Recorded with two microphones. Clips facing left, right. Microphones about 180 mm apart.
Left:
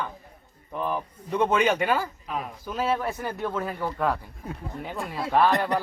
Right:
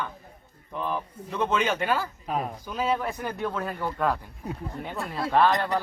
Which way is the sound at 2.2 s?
40° right (ahead or behind).